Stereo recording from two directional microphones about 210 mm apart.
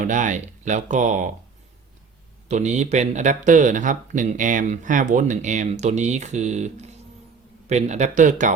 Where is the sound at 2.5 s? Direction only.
35° right (ahead or behind).